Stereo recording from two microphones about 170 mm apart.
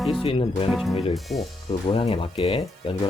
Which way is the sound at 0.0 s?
Centre (ahead or behind).